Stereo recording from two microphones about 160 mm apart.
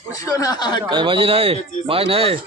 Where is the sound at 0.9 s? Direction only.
30° right (ahead or behind).